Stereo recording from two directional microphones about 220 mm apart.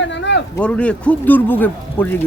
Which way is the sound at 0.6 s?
5° left (ahead or behind).